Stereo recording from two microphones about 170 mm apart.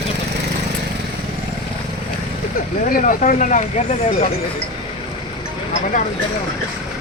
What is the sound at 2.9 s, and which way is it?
Speech, 50° left (ahead or behind).